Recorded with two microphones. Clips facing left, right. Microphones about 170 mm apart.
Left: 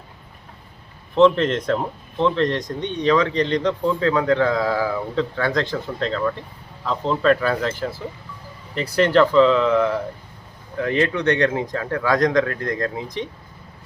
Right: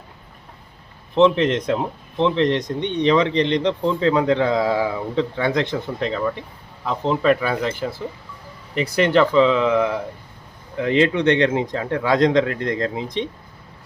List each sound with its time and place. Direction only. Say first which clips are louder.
1.1 s a man's voice: even; 15° right (ahead or behind)